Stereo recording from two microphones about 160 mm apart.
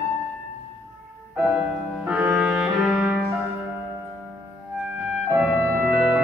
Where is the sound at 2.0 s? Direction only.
10° right (ahead or behind).